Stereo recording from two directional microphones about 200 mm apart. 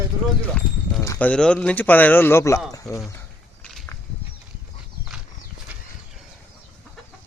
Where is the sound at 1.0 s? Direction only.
15° left (ahead or behind).